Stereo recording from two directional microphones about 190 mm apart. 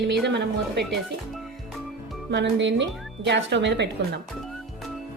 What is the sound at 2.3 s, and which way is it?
Speech, 70° right (ahead or behind).